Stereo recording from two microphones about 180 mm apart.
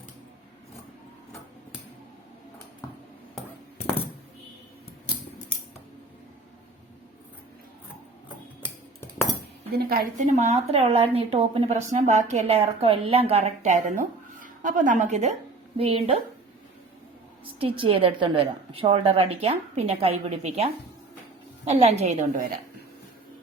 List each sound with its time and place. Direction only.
9.7 s a woman's voice: 55° right (ahead or behind)
10.3 s a woman's voice: 35° right (ahead or behind)
17.6 s a woman's voice: 30° right (ahead or behind)